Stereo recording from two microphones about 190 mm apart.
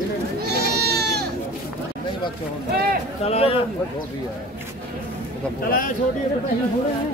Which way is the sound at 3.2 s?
30° left (ahead or behind).